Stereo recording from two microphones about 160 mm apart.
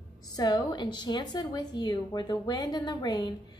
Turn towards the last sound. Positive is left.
turn(degrees=25)  # may be behind; listen again after turning